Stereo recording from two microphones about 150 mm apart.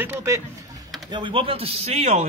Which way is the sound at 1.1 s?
30° right (ahead or behind).